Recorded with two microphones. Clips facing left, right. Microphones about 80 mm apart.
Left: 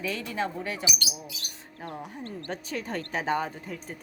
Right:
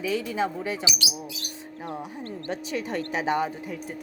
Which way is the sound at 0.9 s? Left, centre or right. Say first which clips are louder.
Right 2 dB; right.